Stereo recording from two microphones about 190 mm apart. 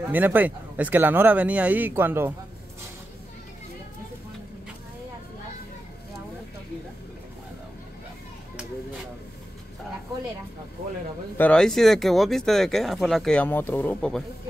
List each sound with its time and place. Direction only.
0.0 s speech: 10° right (ahead or behind)
11.3 s speech: 5° left (ahead or behind)